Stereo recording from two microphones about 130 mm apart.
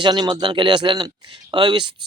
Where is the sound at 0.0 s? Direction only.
35° right (ahead or behind).